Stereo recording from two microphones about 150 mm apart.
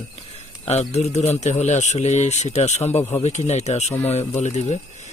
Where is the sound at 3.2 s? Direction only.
50° left (ahead or behind).